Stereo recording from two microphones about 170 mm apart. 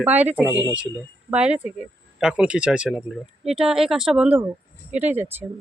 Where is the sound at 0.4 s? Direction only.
20° left (ahead or behind).